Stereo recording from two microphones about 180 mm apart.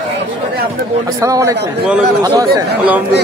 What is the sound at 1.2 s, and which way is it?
A man's voice, 15° right (ahead or behind).